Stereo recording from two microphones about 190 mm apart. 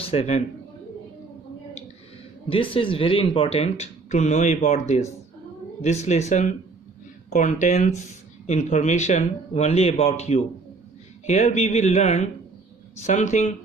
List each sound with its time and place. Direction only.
0.0 s a man's voice: 30° left (ahead or behind)
2.4 s speech: 25° left (ahead or behind)